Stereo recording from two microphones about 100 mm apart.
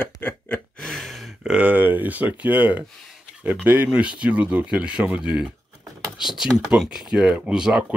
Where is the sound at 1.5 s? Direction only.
15° right (ahead or behind).